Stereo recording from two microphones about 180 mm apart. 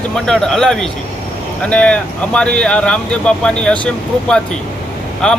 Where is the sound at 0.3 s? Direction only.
5° left (ahead or behind).